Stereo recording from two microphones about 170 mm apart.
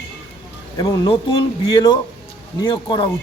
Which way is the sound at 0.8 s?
25° left (ahead or behind).